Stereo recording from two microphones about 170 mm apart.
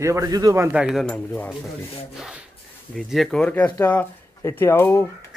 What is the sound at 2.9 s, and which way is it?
Speech, centre (ahead or behind).